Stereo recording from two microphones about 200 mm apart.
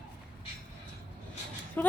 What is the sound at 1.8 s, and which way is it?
Speech, 10° left (ahead or behind).